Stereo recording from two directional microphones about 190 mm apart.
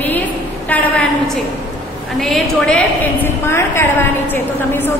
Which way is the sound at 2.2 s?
5° left (ahead or behind).